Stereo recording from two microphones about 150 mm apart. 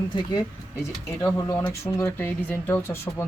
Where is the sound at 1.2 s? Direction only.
25° left (ahead or behind).